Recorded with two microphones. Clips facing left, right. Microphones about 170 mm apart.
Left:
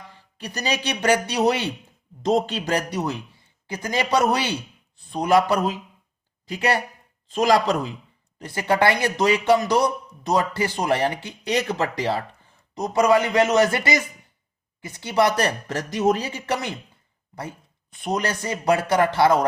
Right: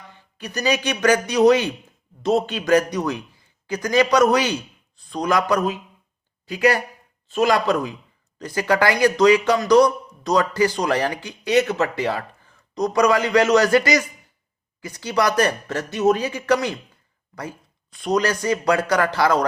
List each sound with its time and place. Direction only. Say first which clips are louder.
0.1 s a man's voice: right 4 dB; 35° left (ahead or behind)
17.9 s a man's voice: right 4 dB; 25° left (ahead or behind)